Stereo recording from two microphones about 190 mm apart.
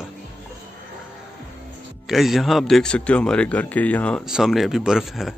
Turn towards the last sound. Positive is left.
turn(degrees=0)  # may be behind; listen again after turning